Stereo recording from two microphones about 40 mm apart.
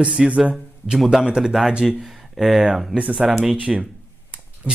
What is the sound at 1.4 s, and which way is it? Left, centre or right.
Speech, centre.